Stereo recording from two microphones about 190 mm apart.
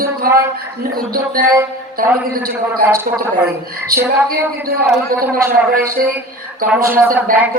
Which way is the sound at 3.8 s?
50° right (ahead or behind).